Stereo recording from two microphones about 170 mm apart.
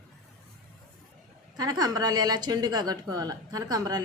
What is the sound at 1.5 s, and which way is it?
A woman's voice, 20° right (ahead or behind).